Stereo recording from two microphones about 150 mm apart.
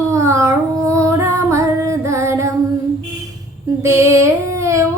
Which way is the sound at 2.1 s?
20° right (ahead or behind).